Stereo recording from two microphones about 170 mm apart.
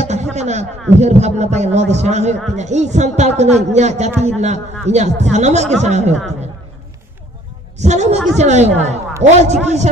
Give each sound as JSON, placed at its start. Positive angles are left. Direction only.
{"t": 0.0, "sound": "a man's voice", "side_deg": -40}
{"t": 7.8, "sound": "a man's voice", "side_deg": -40}